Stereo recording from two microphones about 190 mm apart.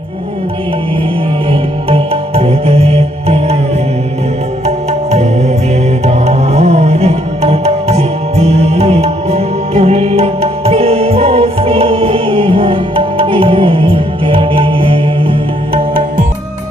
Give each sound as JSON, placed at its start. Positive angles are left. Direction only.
{"t": 1.5, "sound": "music", "side_deg": -30}
{"t": 4.6, "sound": "music", "side_deg": -35}